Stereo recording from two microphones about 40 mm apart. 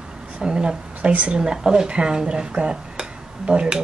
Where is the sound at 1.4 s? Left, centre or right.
Centre.